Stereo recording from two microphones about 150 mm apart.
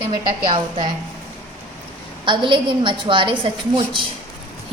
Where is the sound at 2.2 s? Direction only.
35° right (ahead or behind).